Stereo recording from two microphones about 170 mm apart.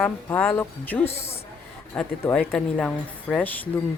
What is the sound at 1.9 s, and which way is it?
Speech, 10° left (ahead or behind).